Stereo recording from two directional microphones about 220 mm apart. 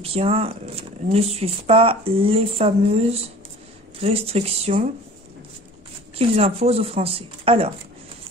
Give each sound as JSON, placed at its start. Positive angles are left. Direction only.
{"t": 0.0, "sound": "speech", "side_deg": -25}
{"t": 6.1, "sound": "speech", "side_deg": -25}